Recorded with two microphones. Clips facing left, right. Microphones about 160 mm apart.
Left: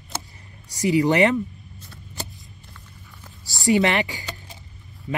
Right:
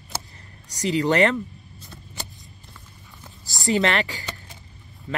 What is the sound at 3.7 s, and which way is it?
Speech, 15° left (ahead or behind).